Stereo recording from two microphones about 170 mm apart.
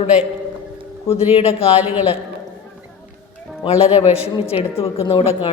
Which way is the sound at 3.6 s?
35° left (ahead or behind).